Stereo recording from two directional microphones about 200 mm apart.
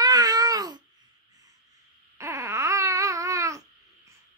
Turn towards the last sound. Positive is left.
turn(degrees=-15)  # may be behind; listen again after turning